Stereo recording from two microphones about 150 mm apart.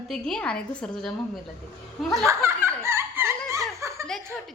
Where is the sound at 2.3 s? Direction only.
15° right (ahead or behind).